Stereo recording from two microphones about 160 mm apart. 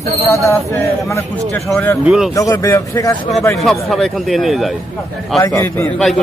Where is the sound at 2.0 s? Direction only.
5° right (ahead or behind).